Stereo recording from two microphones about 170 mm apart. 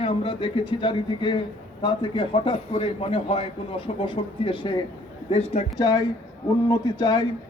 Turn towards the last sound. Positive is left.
turn(degrees=20)  # may be behind; listen again after turning